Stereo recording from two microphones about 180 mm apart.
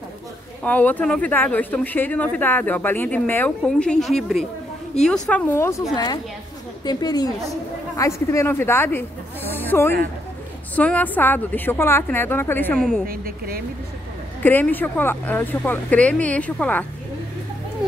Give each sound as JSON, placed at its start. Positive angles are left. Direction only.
{"t": 0.7, "sound": "a woman's voice", "side_deg": 10}
{"t": 13.0, "sound": "speech", "side_deg": -55}
{"t": 14.4, "sound": "speech", "side_deg": 10}